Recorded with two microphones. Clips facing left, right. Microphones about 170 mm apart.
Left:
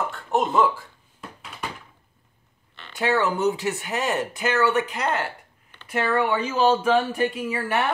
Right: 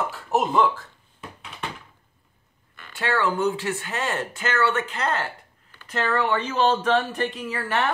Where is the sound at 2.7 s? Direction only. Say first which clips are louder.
Left 1 dB; 25° left (ahead or behind).